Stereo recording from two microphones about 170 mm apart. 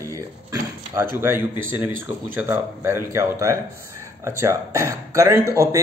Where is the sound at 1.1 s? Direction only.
15° right (ahead or behind).